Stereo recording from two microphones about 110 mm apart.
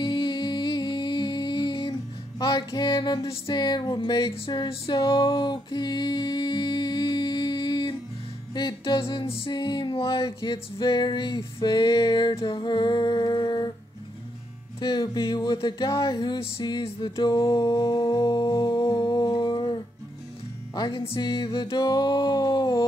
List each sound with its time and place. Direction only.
0.0 s music: 45° left (ahead or behind)
14.8 s music: 45° left (ahead or behind)
17.4 s music: 30° left (ahead or behind)